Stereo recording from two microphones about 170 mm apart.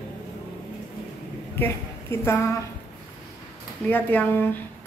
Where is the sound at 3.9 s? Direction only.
10° left (ahead or behind).